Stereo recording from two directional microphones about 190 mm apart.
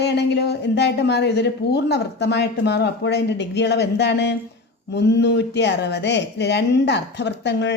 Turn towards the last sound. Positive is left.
turn(degrees=65)  # may be behind; listen again after turning